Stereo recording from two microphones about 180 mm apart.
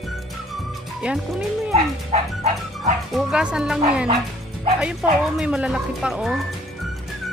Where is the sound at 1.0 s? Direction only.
5° right (ahead or behind).